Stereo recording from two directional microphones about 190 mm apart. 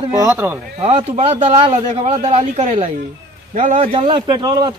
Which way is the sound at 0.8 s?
30° right (ahead or behind).